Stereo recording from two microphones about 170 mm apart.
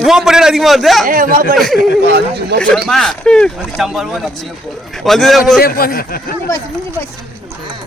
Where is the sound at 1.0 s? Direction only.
55° right (ahead or behind).